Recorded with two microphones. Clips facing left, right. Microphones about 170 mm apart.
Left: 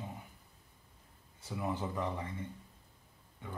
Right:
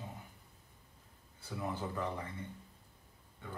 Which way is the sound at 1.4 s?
15° left (ahead or behind).